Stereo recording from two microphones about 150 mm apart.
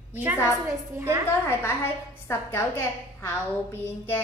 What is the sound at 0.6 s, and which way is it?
Speech, 15° right (ahead or behind).